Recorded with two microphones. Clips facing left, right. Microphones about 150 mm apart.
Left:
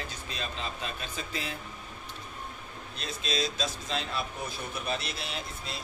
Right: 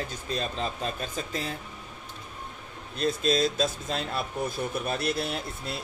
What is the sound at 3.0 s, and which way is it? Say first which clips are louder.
A man's voice: right 8 dB; 50° right (ahead or behind).